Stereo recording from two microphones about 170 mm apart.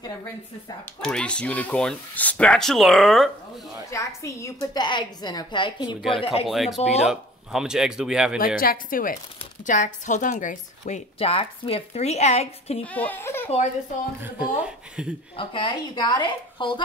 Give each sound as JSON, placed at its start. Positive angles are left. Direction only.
{"t": 1.0, "sound": "speech", "side_deg": 5}
{"t": 3.9, "sound": "a woman's voice", "side_deg": 20}
{"t": 5.9, "sound": "speech", "side_deg": -5}
{"t": 6.1, "sound": "a woman's voice", "side_deg": 30}
{"t": 6.4, "sound": "speech", "side_deg": 0}
{"t": 6.8, "sound": "a woman's voice", "side_deg": 40}
{"t": 7.1, "sound": "speech", "side_deg": -5}
{"t": 8.5, "sound": "a woman's voice", "side_deg": 55}
{"t": 11.1, "sound": "a woman's voice", "side_deg": 35}
{"t": 12.8, "sound": "speech", "side_deg": 10}
{"t": 15.0, "sound": "speech", "side_deg": -5}
{"t": 15.3, "sound": "a woman's voice", "side_deg": 30}